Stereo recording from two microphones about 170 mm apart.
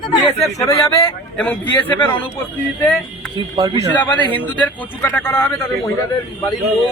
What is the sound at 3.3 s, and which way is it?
Speech, 30° right (ahead or behind).